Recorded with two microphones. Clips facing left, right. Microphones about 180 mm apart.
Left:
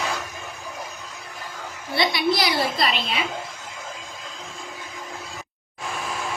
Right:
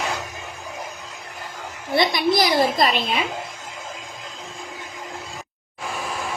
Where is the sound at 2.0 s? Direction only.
45° right (ahead or behind).